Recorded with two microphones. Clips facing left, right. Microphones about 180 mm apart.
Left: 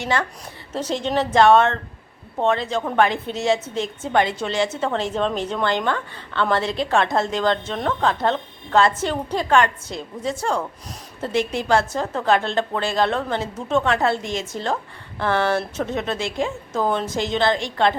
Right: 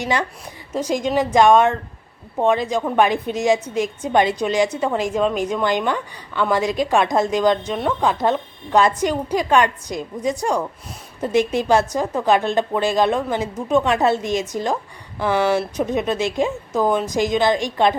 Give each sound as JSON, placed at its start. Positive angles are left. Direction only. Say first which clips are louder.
{"t": 0.0, "sound": "a woman's voice", "louder": "right 1 dB", "side_deg": -15}